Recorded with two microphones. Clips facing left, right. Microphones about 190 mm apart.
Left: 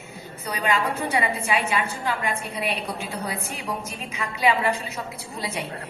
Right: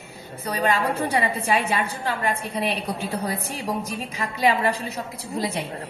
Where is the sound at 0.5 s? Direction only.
40° right (ahead or behind).